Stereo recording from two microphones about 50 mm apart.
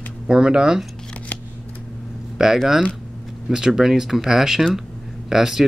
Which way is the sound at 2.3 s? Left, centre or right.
Centre.